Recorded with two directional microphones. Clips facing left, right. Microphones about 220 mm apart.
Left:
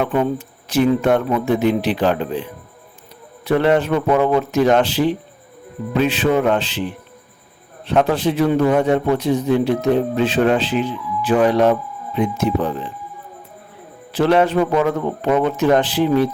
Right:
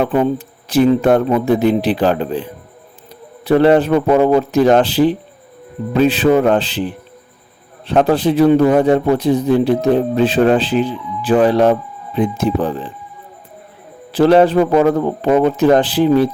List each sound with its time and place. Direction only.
0.0 s a man's voice: 35° right (ahead or behind)
7.9 s a man's voice: 35° right (ahead or behind)
14.1 s a man's voice: 35° right (ahead or behind)